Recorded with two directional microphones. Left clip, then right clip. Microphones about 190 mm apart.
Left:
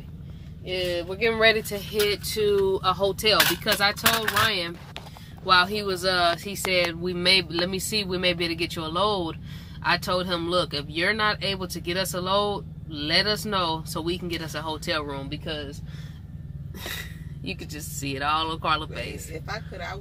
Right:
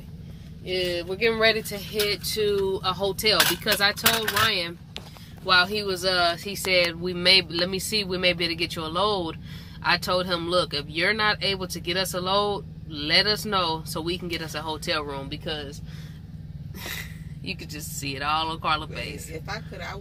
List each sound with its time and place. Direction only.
0.7 s speech: 15° left (ahead or behind)
1.4 s speech: 30° left (ahead or behind)
3.3 s speech: 5° left (ahead or behind); by 15.7 s 10° right (ahead or behind)
18.0 s speech: 40° left (ahead or behind)